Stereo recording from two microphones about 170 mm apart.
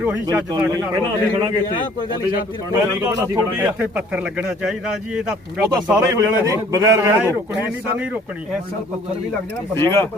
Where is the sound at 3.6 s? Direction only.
10° right (ahead or behind).